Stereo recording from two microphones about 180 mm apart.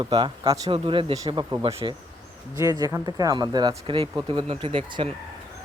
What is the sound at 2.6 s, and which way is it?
Speech, 20° right (ahead or behind).